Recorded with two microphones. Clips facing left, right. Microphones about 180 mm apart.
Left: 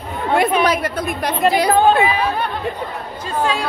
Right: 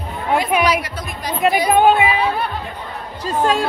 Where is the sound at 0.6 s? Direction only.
55° left (ahead or behind).